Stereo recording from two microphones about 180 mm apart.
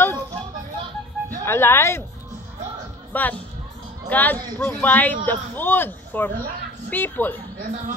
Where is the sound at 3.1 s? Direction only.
10° left (ahead or behind).